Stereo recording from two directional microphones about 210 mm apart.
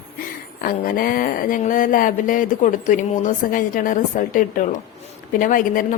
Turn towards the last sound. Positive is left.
turn(degrees=40)  # may be behind; listen again after turning